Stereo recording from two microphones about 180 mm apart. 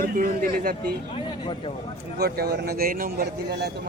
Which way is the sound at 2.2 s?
60° right (ahead or behind).